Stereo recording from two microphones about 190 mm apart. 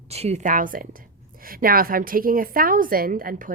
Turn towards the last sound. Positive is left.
turn(degrees=-45)  # may be behind; listen again after turning